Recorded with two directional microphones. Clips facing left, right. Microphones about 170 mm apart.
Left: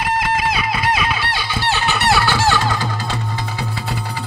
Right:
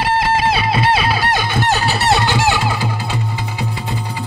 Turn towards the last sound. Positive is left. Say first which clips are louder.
# right 1 dB
turn(degrees=-10)  # may be behind; listen again after turning